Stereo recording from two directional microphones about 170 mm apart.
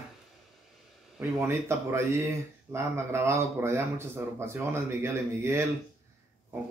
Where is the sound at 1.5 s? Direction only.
15° right (ahead or behind).